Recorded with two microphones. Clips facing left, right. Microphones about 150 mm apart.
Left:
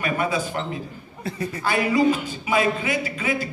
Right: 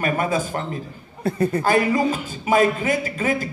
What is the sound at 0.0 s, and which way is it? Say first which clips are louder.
A man's voice: right 2 dB; 45° right (ahead or behind).